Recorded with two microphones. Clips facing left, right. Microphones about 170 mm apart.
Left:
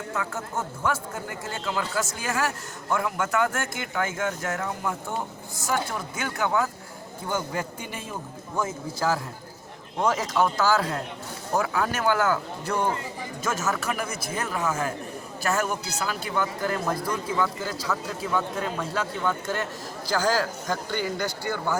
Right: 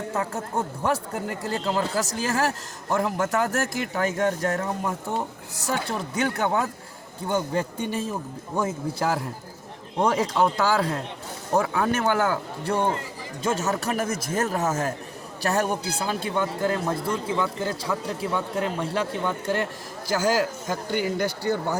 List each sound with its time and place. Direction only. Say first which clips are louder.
0.1 s a man's voice: right 2 dB; 35° right (ahead or behind)